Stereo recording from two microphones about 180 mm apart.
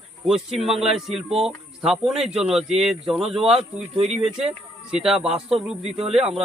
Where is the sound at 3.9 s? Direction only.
35° right (ahead or behind).